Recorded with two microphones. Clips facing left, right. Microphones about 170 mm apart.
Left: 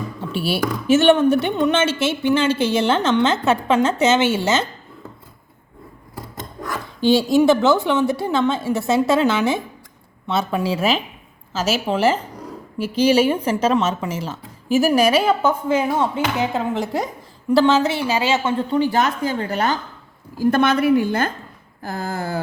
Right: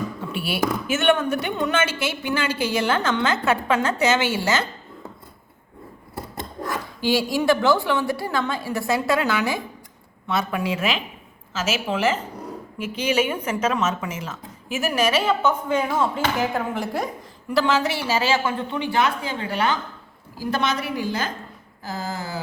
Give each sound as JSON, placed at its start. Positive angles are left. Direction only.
{"t": 0.3, "sound": "a woman's voice", "side_deg": 30}
{"t": 7.0, "sound": "a woman's voice", "side_deg": 25}
{"t": 15.8, "sound": "a woman's voice", "side_deg": 20}
{"t": 18.7, "sound": "a woman's voice", "side_deg": 40}
{"t": 20.4, "sound": "a woman's voice", "side_deg": 55}